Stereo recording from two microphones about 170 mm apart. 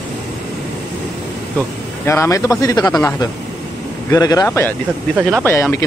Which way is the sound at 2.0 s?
15° left (ahead or behind).